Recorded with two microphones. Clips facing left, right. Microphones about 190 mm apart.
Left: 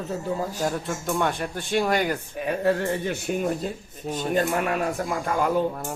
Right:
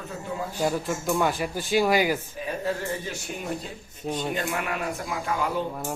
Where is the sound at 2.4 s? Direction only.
65° left (ahead or behind).